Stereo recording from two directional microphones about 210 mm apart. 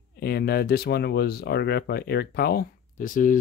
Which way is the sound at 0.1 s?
50° left (ahead or behind).